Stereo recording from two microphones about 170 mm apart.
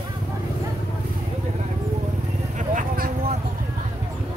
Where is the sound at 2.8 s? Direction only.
55° right (ahead or behind).